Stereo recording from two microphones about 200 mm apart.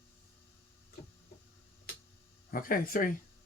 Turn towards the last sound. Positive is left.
turn(degrees=45)  # may be behind; listen again after turning